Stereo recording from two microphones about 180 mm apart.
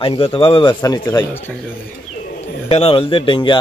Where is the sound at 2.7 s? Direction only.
30° left (ahead or behind).